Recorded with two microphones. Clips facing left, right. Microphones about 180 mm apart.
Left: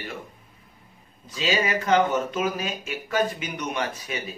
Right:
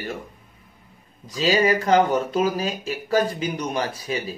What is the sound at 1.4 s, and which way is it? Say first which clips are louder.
Speech: right 5 dB; 35° right (ahead or behind).